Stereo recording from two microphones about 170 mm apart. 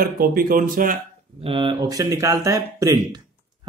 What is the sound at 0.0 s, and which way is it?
Speech, 60° right (ahead or behind).